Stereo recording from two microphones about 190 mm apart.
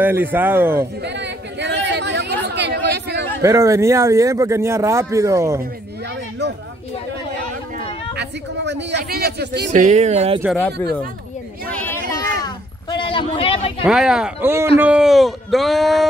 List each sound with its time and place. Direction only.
0.0 s a man's voice: 10° right (ahead or behind)
1.0 s chatter: 65° right (ahead or behind)
3.4 s a man's voice: 15° right (ahead or behind)
6.4 s speech: 60° right (ahead or behind)
7.8 s a sound: 65° right (ahead or behind)
9.7 s speech: 40° right (ahead or behind)
10.5 s speech: 5° left (ahead or behind)
11.7 s a sound: 10° left (ahead or behind); by 13.8 s 30° left (ahead or behind)
13.8 s a man's voice: 5° right (ahead or behind)